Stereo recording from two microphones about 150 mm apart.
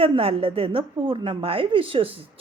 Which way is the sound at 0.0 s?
40° right (ahead or behind).